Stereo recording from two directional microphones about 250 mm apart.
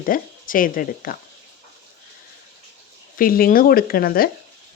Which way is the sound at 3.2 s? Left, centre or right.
Left.